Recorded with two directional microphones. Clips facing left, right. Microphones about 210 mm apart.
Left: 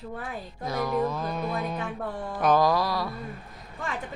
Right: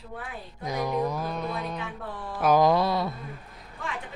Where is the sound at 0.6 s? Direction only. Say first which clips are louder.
Left 1 dB; 15° right (ahead or behind).